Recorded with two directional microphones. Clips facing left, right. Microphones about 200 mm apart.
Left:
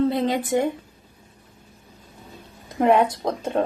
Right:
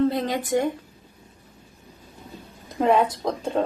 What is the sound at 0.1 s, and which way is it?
Speech, 25° left (ahead or behind).